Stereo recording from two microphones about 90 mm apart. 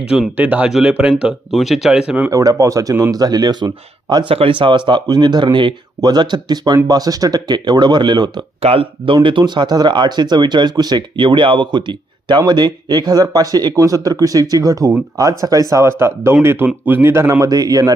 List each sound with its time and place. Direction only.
0.3 s speech: 15° right (ahead or behind)
0.7 s speech: 5° right (ahead or behind)
2.3 s speech: 40° right (ahead or behind)
4.1 s speech: 75° right (ahead or behind)
4.9 s speech: 50° right (ahead or behind)
6.0 s speech: 50° right (ahead or behind)
8.7 s speech: 90° right
9.2 s speech: 60° right (ahead or behind); by 17.5 s 30° right (ahead or behind)
17.5 s speech: 45° right (ahead or behind)